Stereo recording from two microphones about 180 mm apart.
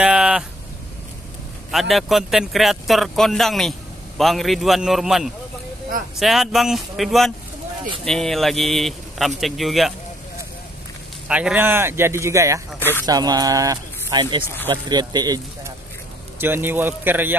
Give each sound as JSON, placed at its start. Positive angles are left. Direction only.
{"t": 0.0, "sound": "a sound", "side_deg": -5}
{"t": 1.7, "sound": "a man's voice", "side_deg": 0}
{"t": 11.2, "sound": "speech", "side_deg": -5}